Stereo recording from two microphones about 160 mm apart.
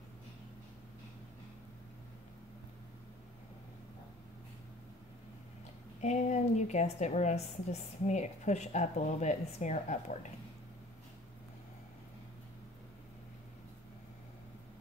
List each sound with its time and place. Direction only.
5.9 s a woman's voice: 45° left (ahead or behind)